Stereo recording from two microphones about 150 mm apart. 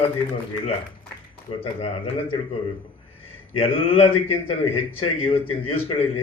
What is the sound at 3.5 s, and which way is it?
A man's voice, 40° left (ahead or behind).